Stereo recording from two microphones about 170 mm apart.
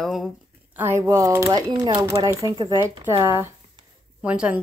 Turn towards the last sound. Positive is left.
turn(degrees=-5)  # may be behind; listen again after turning